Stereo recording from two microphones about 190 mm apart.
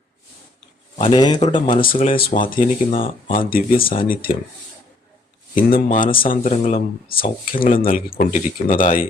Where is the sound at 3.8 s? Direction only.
50° left (ahead or behind).